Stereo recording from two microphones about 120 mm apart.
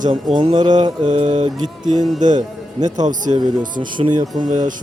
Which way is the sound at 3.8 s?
40° right (ahead or behind).